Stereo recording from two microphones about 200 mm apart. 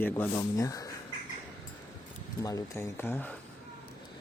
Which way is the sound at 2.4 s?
15° left (ahead or behind).